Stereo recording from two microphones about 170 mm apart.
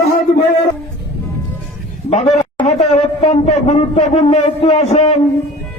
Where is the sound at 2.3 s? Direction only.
40° left (ahead or behind).